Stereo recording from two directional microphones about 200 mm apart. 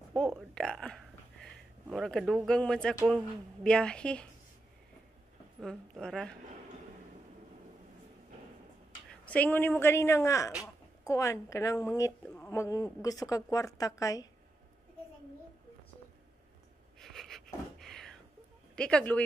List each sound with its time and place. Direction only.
0.1 s a woman's voice: 5° left (ahead or behind)
5.6 s a woman's voice: 5° left (ahead or behind)
9.2 s speech: 5° left (ahead or behind)
17.0 s a sound: centre (ahead or behind)
18.8 s a woman's voice: 5° left (ahead or behind)